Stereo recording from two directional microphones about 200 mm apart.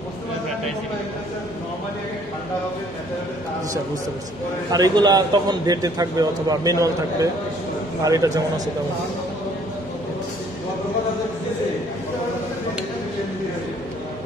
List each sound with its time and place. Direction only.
4.7 s a man's voice: 20° right (ahead or behind)